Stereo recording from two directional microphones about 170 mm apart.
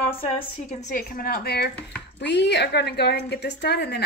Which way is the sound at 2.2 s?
90° left.